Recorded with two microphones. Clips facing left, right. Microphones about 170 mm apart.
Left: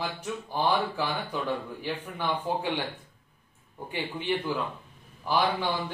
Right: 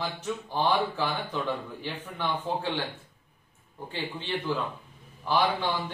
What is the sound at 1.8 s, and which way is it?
Speech, 10° left (ahead or behind).